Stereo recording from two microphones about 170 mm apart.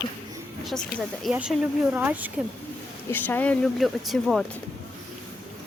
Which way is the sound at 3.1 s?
10° left (ahead or behind).